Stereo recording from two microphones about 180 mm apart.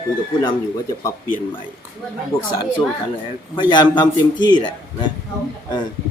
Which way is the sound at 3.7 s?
25° left (ahead or behind).